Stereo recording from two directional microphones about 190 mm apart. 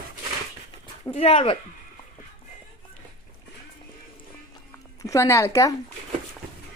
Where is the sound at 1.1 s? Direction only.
30° left (ahead or behind).